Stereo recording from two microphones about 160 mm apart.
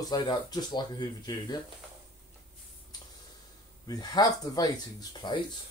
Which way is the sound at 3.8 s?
25° left (ahead or behind).